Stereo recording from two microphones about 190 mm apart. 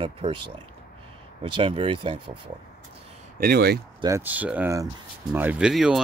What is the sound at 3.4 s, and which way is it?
Speech, 55° right (ahead or behind).